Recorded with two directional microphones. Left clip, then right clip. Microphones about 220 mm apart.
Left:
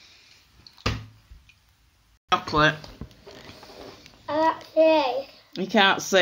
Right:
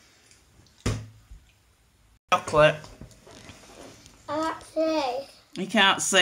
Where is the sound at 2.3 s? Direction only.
5° right (ahead or behind).